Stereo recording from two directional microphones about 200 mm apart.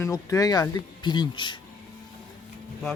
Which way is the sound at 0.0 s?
15° left (ahead or behind).